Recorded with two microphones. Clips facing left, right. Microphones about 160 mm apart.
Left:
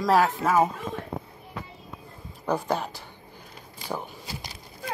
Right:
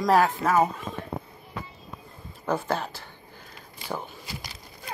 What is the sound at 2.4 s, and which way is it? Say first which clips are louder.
Speech: left 1 dB; 15° left (ahead or behind).